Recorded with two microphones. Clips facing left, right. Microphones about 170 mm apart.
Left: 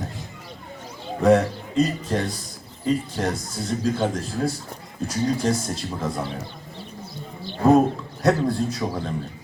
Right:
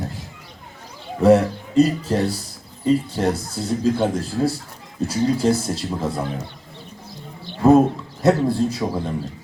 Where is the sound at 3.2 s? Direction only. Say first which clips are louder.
Right 4 dB; 30° right (ahead or behind).